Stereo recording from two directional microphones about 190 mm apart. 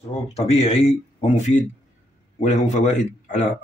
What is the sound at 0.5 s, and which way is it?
Speech, 35° left (ahead or behind).